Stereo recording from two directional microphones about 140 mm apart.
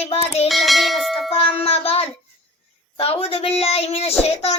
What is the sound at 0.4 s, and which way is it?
Bell, centre (ahead or behind).